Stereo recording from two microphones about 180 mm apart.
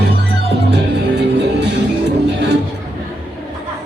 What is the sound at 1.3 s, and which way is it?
Music, 75° right (ahead or behind).